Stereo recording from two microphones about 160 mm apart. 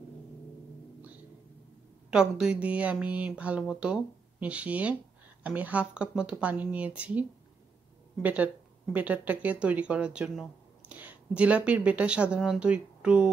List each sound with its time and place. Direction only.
2.0 s speech: 5° right (ahead or behind)